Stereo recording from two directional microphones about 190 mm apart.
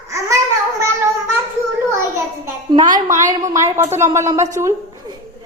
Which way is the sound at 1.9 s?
15° right (ahead or behind).